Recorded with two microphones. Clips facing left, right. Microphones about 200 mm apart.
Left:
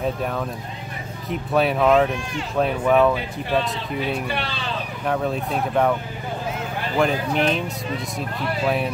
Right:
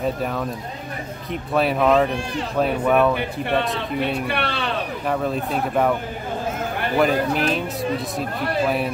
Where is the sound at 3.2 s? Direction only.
60° right (ahead or behind).